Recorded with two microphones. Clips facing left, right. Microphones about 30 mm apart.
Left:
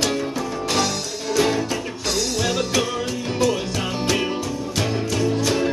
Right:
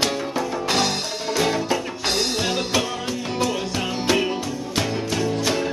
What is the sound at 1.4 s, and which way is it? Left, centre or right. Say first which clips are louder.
Music: left 2 dB; centre.